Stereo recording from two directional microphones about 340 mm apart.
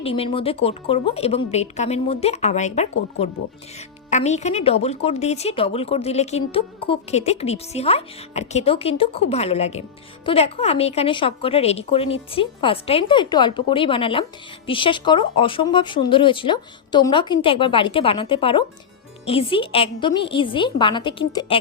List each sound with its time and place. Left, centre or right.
0.0 s speech: centre
4.1 s speech: centre